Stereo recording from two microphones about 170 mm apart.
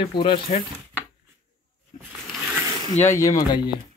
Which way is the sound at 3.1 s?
20° left (ahead or behind).